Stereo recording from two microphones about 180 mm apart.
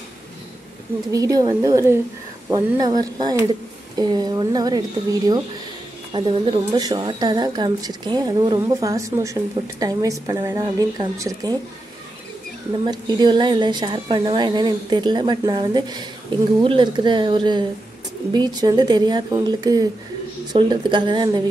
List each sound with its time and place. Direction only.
1.1 s a woman's voice: 20° right (ahead or behind)
12.7 s a woman's voice: 25° right (ahead or behind)